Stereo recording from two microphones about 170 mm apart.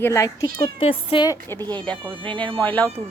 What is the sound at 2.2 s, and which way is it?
Speech, 5° left (ahead or behind).